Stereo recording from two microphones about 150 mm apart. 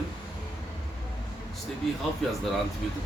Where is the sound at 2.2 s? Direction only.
5° left (ahead or behind).